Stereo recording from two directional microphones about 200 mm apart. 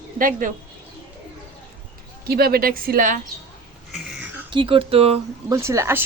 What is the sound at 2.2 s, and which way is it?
Speech, 50° right (ahead or behind).